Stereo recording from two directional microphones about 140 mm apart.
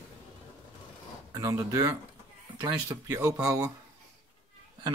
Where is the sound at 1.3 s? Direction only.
25° right (ahead or behind).